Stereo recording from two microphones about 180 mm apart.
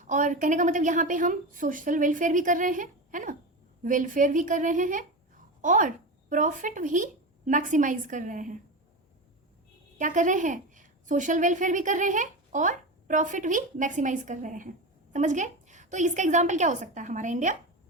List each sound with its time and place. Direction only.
0.0 s a woman's voice: 45° right (ahead or behind)
10.0 s a woman's voice: 45° right (ahead or behind)